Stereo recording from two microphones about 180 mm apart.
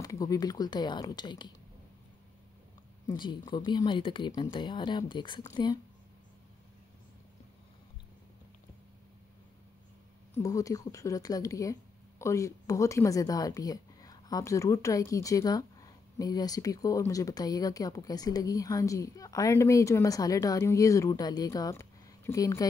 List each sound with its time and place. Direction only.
0.0 s speech: 20° left (ahead or behind)
3.2 s speech: 25° left (ahead or behind)
10.3 s speech: 20° left (ahead or behind)